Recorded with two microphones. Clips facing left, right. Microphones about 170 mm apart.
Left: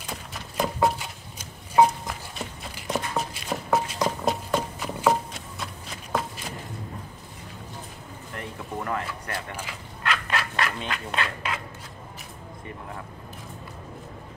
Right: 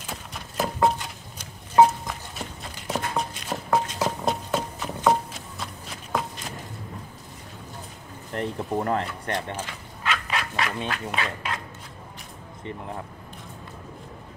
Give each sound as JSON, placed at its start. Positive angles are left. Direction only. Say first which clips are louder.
{"t": 0.0, "sound": "a sound", "louder": "even", "side_deg": 0}
{"t": 2.7, "sound": "music", "louder": "even", "side_deg": 5}
{"t": 8.4, "sound": "speech", "louder": "right 7 dB", "side_deg": -35}
{"t": 10.0, "sound": "frog", "louder": "even", "side_deg": 0}
{"t": 10.9, "sound": "fowl", "louder": "right 1 dB", "side_deg": 0}